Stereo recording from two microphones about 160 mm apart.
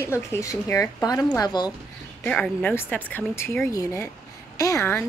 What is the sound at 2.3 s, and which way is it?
Speech, 5° left (ahead or behind).